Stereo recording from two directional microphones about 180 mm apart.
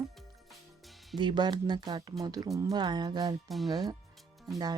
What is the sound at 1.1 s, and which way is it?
Speech, 25° right (ahead or behind).